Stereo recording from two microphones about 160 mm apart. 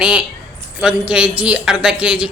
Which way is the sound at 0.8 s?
5° right (ahead or behind).